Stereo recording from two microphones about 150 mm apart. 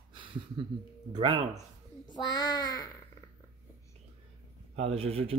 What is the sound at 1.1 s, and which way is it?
Speech, 35° right (ahead or behind).